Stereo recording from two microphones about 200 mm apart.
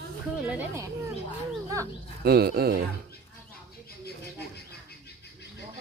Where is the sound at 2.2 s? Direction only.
50° right (ahead or behind).